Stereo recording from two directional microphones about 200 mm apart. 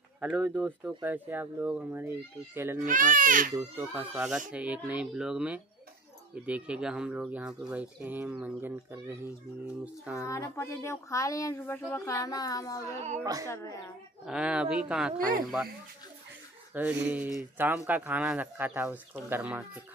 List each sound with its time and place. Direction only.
0.2 s speech: centre (ahead or behind)
2.8 s speech: 40° right (ahead or behind)
3.5 s speech: 10° right (ahead or behind)
10.2 s speech: 15° left (ahead or behind)
12.9 s speech: 35° right (ahead or behind)
13.2 s speech: 15° right (ahead or behind)
13.5 s speech: 15° left (ahead or behind)
14.2 s speech: 5° right (ahead or behind)
16.7 s speech: 10° right (ahead or behind)